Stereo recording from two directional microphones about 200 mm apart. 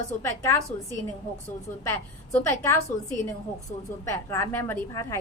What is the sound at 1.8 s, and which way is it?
Speech, 15° left (ahead or behind).